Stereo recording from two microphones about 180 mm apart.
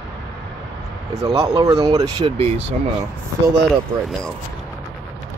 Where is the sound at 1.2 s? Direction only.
20° right (ahead or behind).